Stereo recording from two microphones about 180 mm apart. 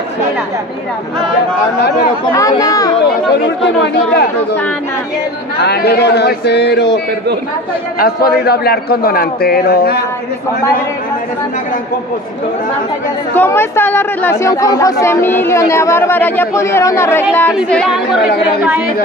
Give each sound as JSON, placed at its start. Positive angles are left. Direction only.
{"t": 2.3, "sound": "speech", "side_deg": 20}
{"t": 3.8, "sound": "a man's voice", "side_deg": 65}
{"t": 5.6, "sound": "speech", "side_deg": 65}
{"t": 8.0, "sound": "a man's voice", "side_deg": 60}
{"t": 13.3, "sound": "speech", "side_deg": 10}